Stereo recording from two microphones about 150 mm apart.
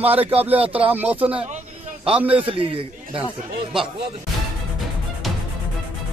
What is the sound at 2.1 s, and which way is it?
Speech, 40° right (ahead or behind).